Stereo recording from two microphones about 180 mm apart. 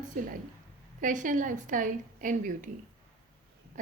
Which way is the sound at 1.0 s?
45° right (ahead or behind).